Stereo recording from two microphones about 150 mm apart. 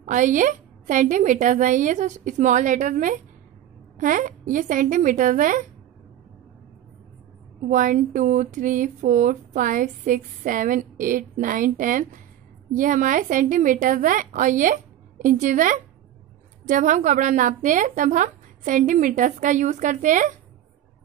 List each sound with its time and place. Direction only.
0.0 s speech: 55° right (ahead or behind)
7.6 s speech: 60° right (ahead or behind)